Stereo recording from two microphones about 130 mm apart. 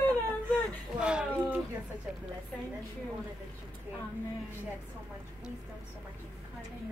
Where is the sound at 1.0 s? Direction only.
10° right (ahead or behind).